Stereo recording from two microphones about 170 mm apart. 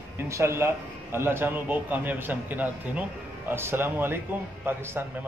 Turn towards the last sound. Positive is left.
turn(degrees=-15)  # may be behind; listen again after turning